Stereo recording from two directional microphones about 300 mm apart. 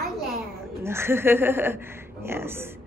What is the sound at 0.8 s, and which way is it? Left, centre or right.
A woman's voice, centre.